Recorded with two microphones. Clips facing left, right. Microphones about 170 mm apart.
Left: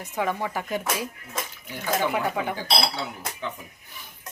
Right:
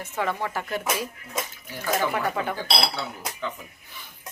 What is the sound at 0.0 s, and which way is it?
Speech, 15° left (ahead or behind).